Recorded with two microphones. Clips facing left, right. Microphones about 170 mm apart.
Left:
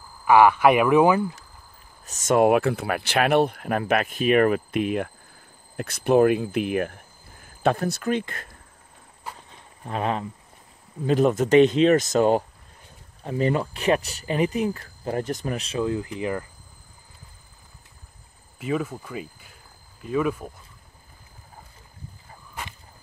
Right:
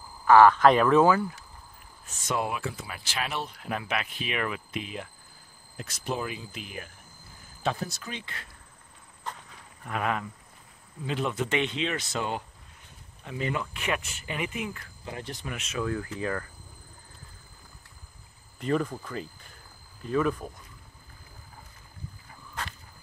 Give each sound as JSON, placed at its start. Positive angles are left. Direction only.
{"t": 0.2, "sound": "speech", "side_deg": 10}
{"t": 2.0, "sound": "speech", "side_deg": 45}
{"t": 9.5, "sound": "cricket", "side_deg": 30}
{"t": 11.1, "sound": "speech", "side_deg": 45}
{"t": 15.9, "sound": "speech", "side_deg": 20}
{"t": 18.6, "sound": "speech", "side_deg": 5}